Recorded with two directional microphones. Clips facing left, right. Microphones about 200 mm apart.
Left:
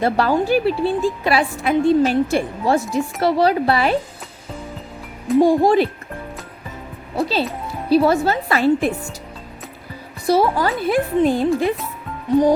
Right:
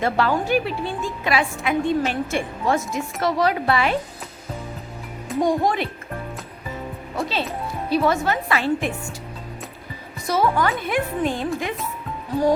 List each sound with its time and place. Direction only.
0.0 s a woman's voice: 35° left (ahead or behind)
5.3 s a child's voice: centre (ahead or behind)
5.6 s a woman's voice: 35° left (ahead or behind)
7.2 s a woman's voice: 35° left (ahead or behind)
10.2 s a woman's voice: 35° left (ahead or behind)